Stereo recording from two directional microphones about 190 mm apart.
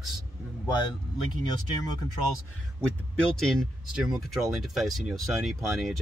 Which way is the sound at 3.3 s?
Centre (ahead or behind).